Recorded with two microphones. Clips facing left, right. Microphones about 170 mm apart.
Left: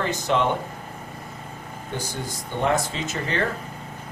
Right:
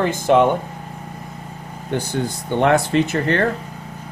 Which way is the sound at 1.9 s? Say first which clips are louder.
Right 9 dB; 65° right (ahead or behind).